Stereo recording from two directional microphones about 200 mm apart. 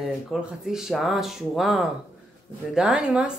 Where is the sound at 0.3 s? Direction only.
Centre (ahead or behind).